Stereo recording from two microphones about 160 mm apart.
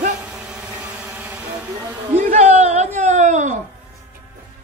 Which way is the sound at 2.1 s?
40° right (ahead or behind).